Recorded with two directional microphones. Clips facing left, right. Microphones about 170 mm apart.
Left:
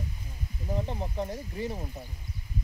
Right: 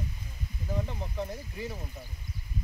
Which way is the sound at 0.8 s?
20° left (ahead or behind).